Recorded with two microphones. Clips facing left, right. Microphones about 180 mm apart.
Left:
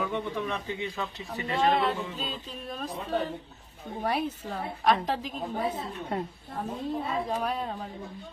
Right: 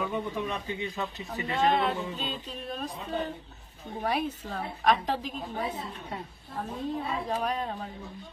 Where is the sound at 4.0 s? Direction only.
Centre (ahead or behind).